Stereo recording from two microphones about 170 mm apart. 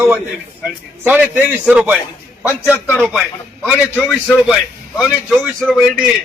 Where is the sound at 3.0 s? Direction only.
5° right (ahead or behind).